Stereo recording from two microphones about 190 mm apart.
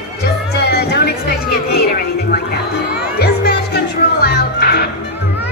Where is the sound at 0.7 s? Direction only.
60° left (ahead or behind).